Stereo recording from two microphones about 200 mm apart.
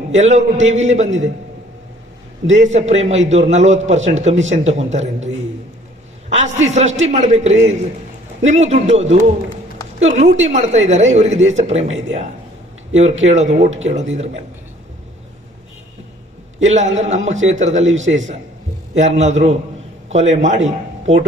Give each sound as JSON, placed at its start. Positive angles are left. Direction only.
{"t": 0.1, "sound": "speech", "side_deg": -35}
{"t": 2.5, "sound": "speech", "side_deg": -35}
{"t": 6.3, "sound": "speech", "side_deg": -35}
{"t": 13.3, "sound": "speech", "side_deg": -35}
{"t": 16.6, "sound": "a man's voice", "side_deg": -35}